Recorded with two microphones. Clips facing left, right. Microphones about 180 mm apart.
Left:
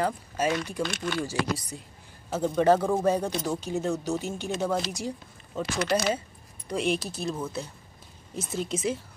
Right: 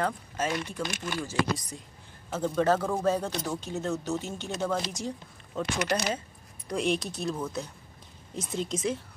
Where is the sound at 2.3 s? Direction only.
15° left (ahead or behind).